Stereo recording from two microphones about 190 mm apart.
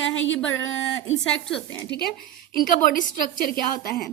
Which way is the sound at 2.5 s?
45° left (ahead or behind).